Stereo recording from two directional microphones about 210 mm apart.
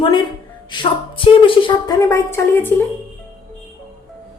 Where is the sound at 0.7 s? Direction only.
20° left (ahead or behind).